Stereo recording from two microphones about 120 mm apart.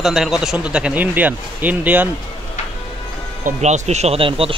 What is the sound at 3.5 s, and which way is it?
Speech, 75° right (ahead or behind).